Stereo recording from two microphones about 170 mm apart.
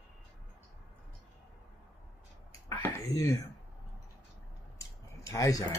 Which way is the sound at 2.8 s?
20° left (ahead or behind).